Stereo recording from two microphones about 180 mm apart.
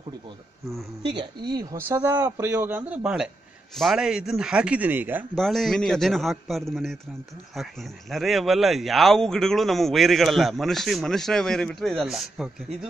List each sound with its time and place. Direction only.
1.5 s a man's voice: 20° right (ahead or behind)
5.3 s speech: centre (ahead or behind)
8.1 s speech: centre (ahead or behind)